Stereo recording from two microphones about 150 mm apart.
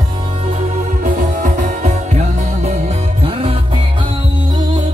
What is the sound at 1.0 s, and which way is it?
Music, 60° right (ahead or behind).